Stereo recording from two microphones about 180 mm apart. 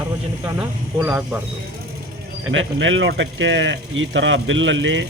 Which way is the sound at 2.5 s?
90° right.